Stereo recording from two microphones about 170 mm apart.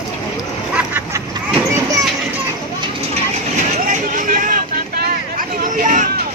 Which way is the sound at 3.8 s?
50° right (ahead or behind).